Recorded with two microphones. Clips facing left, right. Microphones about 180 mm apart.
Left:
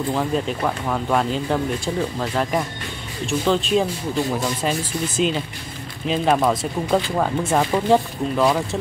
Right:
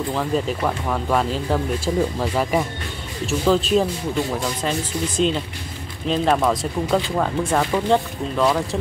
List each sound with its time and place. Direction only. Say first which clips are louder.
0.1 s speech: even; centre (ahead or behind)